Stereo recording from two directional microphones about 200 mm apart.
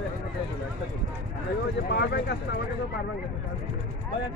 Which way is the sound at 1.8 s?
55° left (ahead or behind).